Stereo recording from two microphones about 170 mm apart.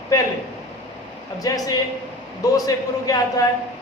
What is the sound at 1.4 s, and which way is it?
Speech, 20° left (ahead or behind).